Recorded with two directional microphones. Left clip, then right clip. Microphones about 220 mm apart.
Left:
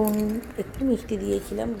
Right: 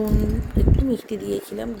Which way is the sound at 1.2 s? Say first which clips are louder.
Even; 5° right (ahead or behind).